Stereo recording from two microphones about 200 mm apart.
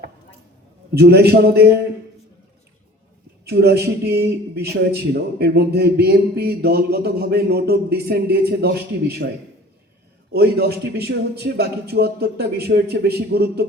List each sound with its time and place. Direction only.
0.9 s speech: 55° right (ahead or behind)
3.4 s speech: 55° right (ahead or behind)
10.3 s speech: 50° right (ahead or behind)